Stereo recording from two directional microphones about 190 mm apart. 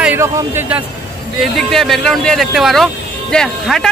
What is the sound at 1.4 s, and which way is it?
Speech, centre (ahead or behind).